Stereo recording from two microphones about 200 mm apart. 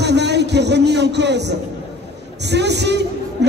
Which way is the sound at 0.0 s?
60° right (ahead or behind).